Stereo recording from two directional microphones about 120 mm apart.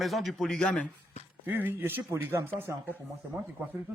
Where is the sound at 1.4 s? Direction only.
15° right (ahead or behind).